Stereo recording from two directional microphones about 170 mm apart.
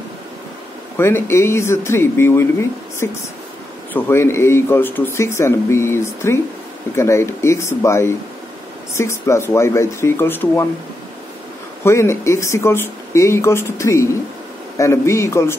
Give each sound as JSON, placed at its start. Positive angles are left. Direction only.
{"t": 0.9, "sound": "speech", "side_deg": 15}
{"t": 11.8, "sound": "speech", "side_deg": 15}